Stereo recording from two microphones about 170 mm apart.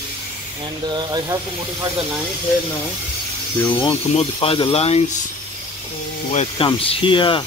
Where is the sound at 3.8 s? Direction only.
35° left (ahead or behind).